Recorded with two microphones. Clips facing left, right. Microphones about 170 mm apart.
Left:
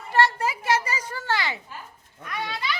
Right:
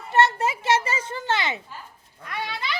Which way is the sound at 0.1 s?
20° right (ahead or behind).